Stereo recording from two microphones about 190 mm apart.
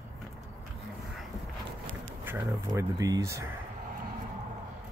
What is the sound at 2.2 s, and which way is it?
Speech, 10° right (ahead or behind).